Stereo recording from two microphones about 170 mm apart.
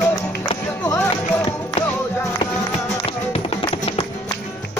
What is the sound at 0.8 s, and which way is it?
Music, 10° left (ahead or behind).